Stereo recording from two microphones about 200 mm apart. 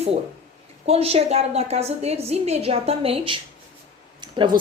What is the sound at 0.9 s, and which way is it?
A woman's voice, 30° right (ahead or behind).